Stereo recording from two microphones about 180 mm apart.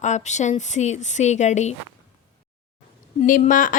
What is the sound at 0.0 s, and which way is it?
Speech, 40° left (ahead or behind).